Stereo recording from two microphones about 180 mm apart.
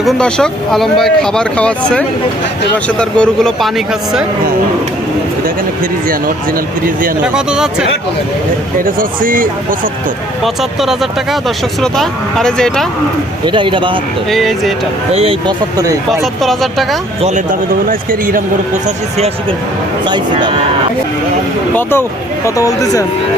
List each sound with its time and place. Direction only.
0.0 s speech: 5° left (ahead or behind)
7.2 s speech: 5° right (ahead or behind)
8.8 s a man's voice: 50° right (ahead or behind)
10.4 s speech: centre (ahead or behind)
13.4 s a man's voice: 25° right (ahead or behind)
14.3 s speech: centre (ahead or behind)
15.1 s speech: 30° right (ahead or behind)
15.8 s a man's voice: 20° right (ahead or behind)
16.2 s speech: centre (ahead or behind)
17.2 s a man's voice: 45° right (ahead or behind)
19.1 s a man's voice: 35° right (ahead or behind)
21.8 s speech: 10° left (ahead or behind)